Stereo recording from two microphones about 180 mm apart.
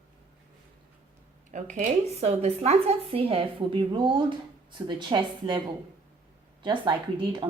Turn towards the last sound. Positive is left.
turn(degrees=-25)  # may be behind; listen again after turning